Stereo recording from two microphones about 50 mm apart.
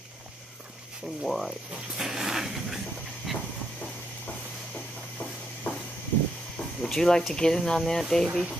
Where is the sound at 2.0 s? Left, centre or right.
Centre.